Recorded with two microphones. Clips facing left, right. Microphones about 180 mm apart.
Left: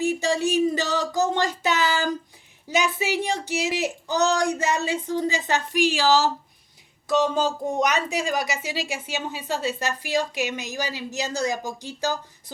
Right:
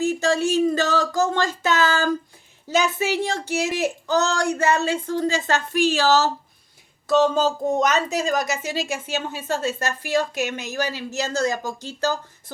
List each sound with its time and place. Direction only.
0.0 s speech: 15° left (ahead or behind)
3.5 s speech: 50° right (ahead or behind)
4.1 s speech: 15° left (ahead or behind)
10.1 s speech: 50° right (ahead or behind)
10.5 s speech: 15° left (ahead or behind)